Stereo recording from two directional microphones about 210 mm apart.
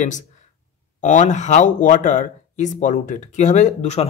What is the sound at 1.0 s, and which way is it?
Speech, 35° left (ahead or behind).